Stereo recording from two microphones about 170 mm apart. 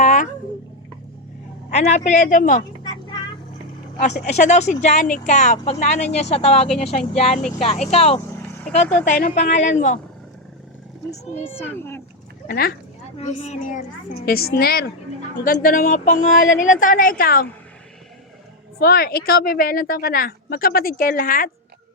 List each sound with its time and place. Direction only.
0.0 s a sound: 45° left (ahead or behind)
1.7 s speech: 45° left (ahead or behind)
4.2 s speech: 45° left (ahead or behind)
11.5 s a child's voice: 10° left (ahead or behind)
12.5 s a woman's voice: 60° left (ahead or behind)
13.1 s speech: 40° left (ahead or behind)
14.3 s a woman's voice: 65° left (ahead or behind)
18.8 s a woman's voice: 65° left (ahead or behind)